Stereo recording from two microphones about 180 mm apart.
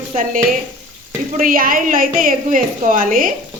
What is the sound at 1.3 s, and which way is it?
A woman's voice, 50° right (ahead or behind).